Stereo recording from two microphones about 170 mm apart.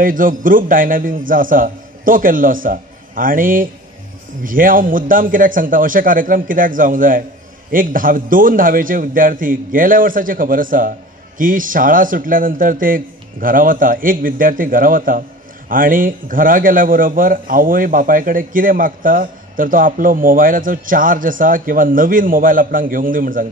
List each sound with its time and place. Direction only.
0.0 s a man's voice: 55° right (ahead or behind)